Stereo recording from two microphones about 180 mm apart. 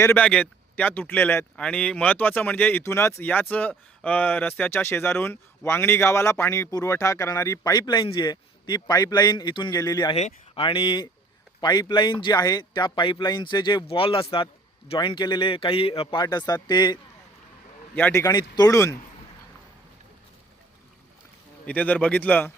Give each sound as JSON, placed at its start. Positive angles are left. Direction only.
{"t": 0.0, "sound": "speech", "side_deg": 10}
{"t": 10.2, "sound": "speech", "side_deg": 35}
{"t": 17.9, "sound": "speech", "side_deg": 15}
{"t": 21.7, "sound": "speech", "side_deg": 10}